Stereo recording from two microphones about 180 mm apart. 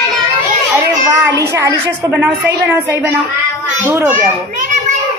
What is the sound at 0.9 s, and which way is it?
A child's voice, 20° right (ahead or behind).